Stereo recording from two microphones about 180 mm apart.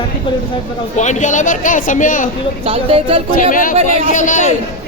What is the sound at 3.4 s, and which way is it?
Speech, 50° left (ahead or behind).